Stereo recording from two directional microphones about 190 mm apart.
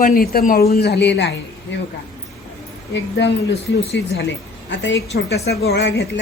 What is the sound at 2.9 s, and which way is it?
A woman's voice, 65° left (ahead or behind).